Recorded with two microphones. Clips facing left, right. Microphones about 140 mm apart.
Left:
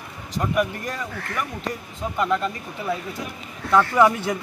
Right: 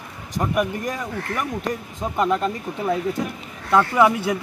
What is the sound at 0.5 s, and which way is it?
Speech, 15° right (ahead or behind).